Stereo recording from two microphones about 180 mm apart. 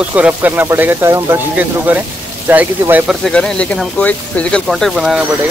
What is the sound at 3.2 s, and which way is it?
Speech, 5° left (ahead or behind).